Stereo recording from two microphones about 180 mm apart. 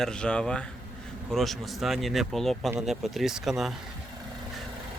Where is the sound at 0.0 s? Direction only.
5° left (ahead or behind).